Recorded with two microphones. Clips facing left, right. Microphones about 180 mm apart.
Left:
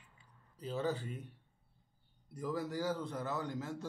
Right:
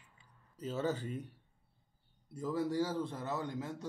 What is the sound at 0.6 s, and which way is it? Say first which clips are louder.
Speech: right 1 dB; 40° right (ahead or behind).